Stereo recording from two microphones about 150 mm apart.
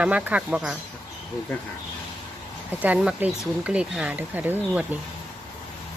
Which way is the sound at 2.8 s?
10° right (ahead or behind).